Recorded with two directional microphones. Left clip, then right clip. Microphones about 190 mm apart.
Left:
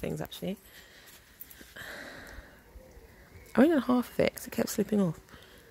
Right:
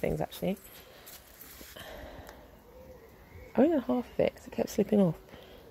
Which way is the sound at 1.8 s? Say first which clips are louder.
Left 4 dB; 35° left (ahead or behind).